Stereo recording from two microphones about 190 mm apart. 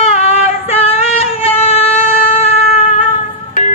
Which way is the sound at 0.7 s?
30° left (ahead or behind).